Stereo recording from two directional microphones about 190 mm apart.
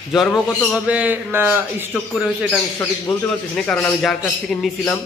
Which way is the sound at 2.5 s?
15° left (ahead or behind).